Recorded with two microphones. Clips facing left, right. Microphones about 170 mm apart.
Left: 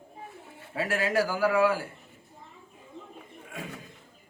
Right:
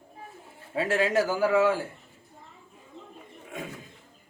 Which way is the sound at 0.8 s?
25° right (ahead or behind).